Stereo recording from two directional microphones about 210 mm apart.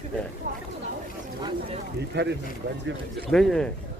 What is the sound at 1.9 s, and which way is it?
Speech, 55° right (ahead or behind).